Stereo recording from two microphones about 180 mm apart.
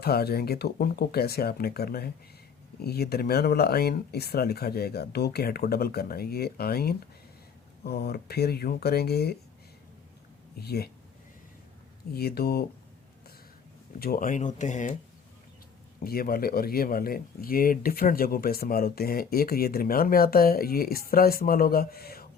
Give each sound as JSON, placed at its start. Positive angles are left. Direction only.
{"t": 0.0, "sound": "speech", "side_deg": 60}
{"t": 10.6, "sound": "speech", "side_deg": 60}
{"t": 12.1, "sound": "speech", "side_deg": 60}
{"t": 14.0, "sound": "speech", "side_deg": 50}
{"t": 16.0, "sound": "speech", "side_deg": 55}